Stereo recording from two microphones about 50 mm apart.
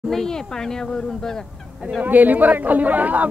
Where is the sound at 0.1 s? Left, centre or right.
Centre.